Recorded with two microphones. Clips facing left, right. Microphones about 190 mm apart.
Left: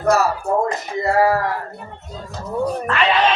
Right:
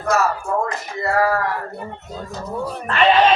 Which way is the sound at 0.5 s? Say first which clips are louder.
Left 3 dB; 35° left (ahead or behind).